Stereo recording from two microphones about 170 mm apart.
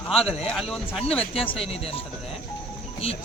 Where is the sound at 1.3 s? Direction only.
30° left (ahead or behind).